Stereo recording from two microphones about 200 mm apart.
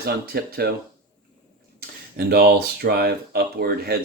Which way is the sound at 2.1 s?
50° right (ahead or behind).